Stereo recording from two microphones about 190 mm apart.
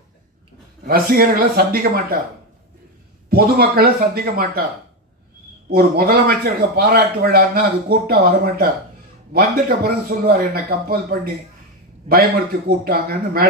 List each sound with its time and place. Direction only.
0.8 s a man's voice: 50° right (ahead or behind)
3.3 s a man's voice: 55° right (ahead or behind)
5.7 s a man's voice: 55° right (ahead or behind)